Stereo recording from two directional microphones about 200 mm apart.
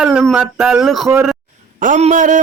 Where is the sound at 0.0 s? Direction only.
Centre (ahead or behind).